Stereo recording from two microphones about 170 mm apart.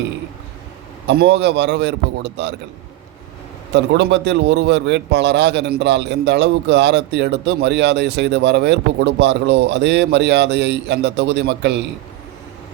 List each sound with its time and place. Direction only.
1.0 s a man's voice: 80° right
3.7 s a man's voice: 90° right